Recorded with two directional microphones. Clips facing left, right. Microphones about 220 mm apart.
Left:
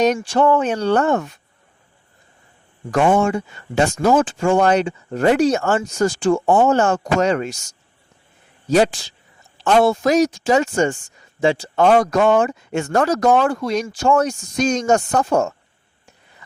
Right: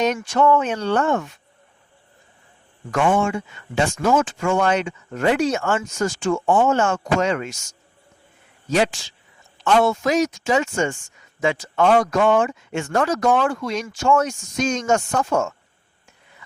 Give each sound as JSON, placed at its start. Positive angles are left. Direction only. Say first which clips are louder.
{"t": 0.0, "sound": "speech", "louder": "left 3 dB", "side_deg": 35}
{"t": 2.9, "sound": "speech", "louder": "left 3 dB", "side_deg": 40}